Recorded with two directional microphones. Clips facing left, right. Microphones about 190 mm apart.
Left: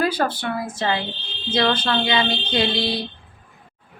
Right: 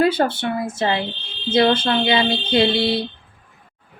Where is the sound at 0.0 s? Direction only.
25° right (ahead or behind).